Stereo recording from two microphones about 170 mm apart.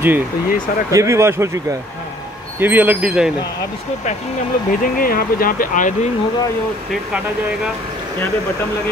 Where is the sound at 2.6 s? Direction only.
10° right (ahead or behind).